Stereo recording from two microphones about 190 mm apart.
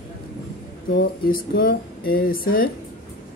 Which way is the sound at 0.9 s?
50° left (ahead or behind).